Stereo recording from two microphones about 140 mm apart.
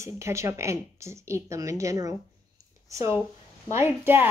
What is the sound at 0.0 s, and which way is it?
A woman's voice, 20° right (ahead or behind).